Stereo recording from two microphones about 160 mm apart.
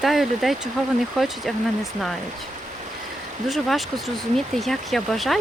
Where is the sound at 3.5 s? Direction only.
Centre (ahead or behind).